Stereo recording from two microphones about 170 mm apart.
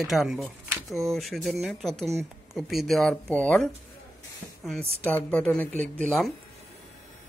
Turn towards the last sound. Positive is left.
turn(degrees=0)  # may be behind; listen again after turning